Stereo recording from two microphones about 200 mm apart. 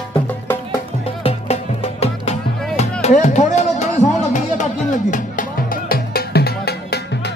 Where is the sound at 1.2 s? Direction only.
30° left (ahead or behind).